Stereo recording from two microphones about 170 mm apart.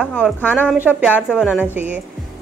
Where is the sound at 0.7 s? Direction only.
10° right (ahead or behind).